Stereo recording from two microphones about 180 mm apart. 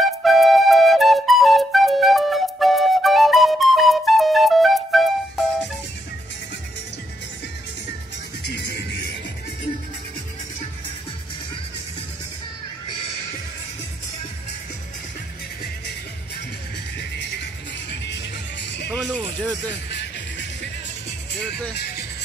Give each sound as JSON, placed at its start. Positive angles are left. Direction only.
{"t": 0.2, "sound": "music", "side_deg": 0}
{"t": 8.5, "sound": "music", "side_deg": 70}
{"t": 18.9, "sound": "music", "side_deg": 5}
{"t": 19.9, "sound": "music", "side_deg": 75}